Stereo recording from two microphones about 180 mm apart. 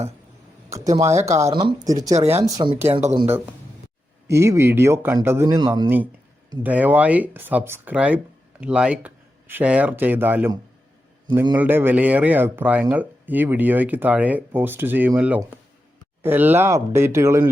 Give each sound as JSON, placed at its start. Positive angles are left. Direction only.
{"t": 0.9, "sound": "speech", "side_deg": -15}
{"t": 2.1, "sound": "speech", "side_deg": -35}
{"t": 2.4, "sound": "speech", "side_deg": -20}
{"t": 4.3, "sound": "speech", "side_deg": -15}
{"t": 6.6, "sound": "speech", "side_deg": -10}